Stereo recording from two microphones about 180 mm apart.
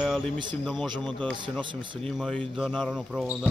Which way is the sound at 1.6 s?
25° right (ahead or behind).